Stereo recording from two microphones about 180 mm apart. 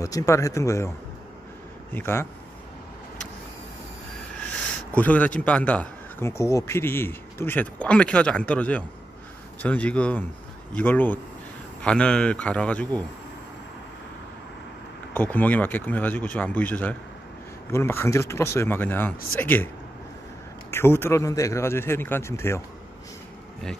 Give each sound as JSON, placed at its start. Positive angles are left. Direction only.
{"t": 0.0, "sound": "speech", "side_deg": 15}
{"t": 4.9, "sound": "speech", "side_deg": 10}
{"t": 15.1, "sound": "speech", "side_deg": 10}
{"t": 20.7, "sound": "speech", "side_deg": 15}